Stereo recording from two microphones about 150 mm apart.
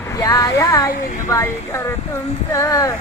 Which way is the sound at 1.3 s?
20° left (ahead or behind).